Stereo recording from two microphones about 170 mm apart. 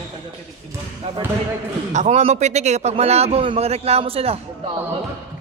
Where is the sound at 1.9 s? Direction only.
40° right (ahead or behind).